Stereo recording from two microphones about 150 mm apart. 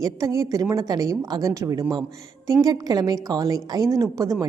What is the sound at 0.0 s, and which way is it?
A woman's voice, 20° right (ahead or behind).